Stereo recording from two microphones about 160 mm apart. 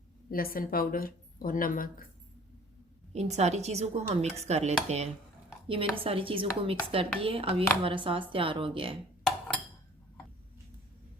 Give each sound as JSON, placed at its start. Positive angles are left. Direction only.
{"t": 0.3, "sound": "speech", "side_deg": 65}
{"t": 3.1, "sound": "dishes", "side_deg": -45}
{"t": 5.6, "sound": "speech", "side_deg": -35}